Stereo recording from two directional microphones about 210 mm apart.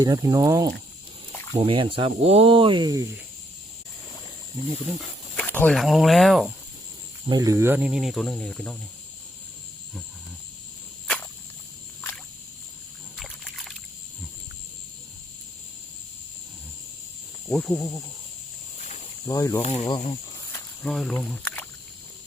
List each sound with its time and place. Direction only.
0.0 s speech: 20° right (ahead or behind)
5.4 s speech: 5° left (ahead or behind)
7.3 s speech: 15° right (ahead or behind); by 8.8 s 5° left (ahead or behind)
13.1 s a sound: centre (ahead or behind)
17.5 s speech: 5° left (ahead or behind)
18.8 s cricket: 30° left (ahead or behind)
19.2 s speech: 15° left (ahead or behind)
19.6 s speech: 25° left (ahead or behind)
20.5 s snake: 5° left (ahead or behind)